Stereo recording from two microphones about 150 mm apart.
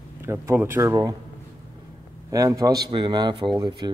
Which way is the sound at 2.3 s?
20° right (ahead or behind).